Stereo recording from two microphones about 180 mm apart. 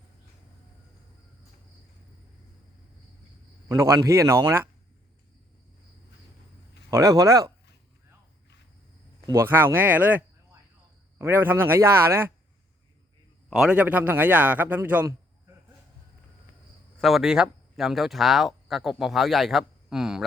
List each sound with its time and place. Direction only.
3.7 s a man's voice: 15° right (ahead or behind)
6.9 s a man's voice: 20° right (ahead or behind)
9.2 s a man's voice: 15° right (ahead or behind)
13.5 s a man's voice: 5° right (ahead or behind)
17.0 s speech: centre (ahead or behind)